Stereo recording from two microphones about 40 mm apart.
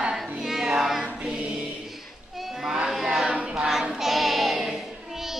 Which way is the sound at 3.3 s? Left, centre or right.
Right.